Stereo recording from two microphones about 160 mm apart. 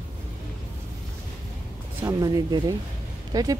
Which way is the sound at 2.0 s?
25° right (ahead or behind).